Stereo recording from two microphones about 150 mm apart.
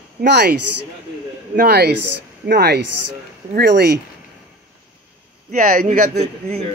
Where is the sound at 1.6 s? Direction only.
90° right.